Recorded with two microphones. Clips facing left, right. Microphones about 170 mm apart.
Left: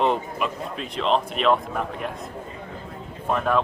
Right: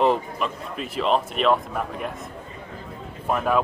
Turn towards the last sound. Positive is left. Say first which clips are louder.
# even
turn(degrees=-5)  # may be behind; listen again after turning